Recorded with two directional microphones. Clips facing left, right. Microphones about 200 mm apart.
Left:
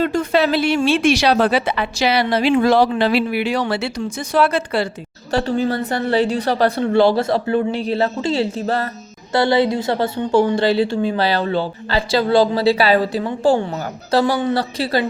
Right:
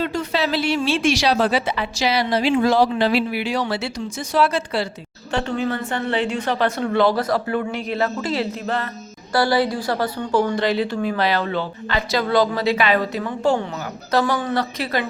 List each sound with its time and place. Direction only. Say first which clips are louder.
0.0 s speech: left 5 dB; 50° left (ahead or behind)
5.3 s a woman's voice: left 4 dB; 35° left (ahead or behind)
9.3 s a woman's voice: left 3 dB; 25° left (ahead or behind)